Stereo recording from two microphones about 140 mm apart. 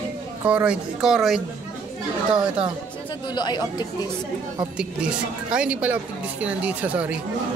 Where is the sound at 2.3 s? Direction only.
35° right (ahead or behind).